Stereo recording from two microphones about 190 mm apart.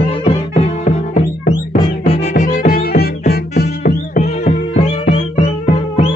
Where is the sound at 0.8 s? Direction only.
35° left (ahead or behind); by 4.2 s 55° left (ahead or behind).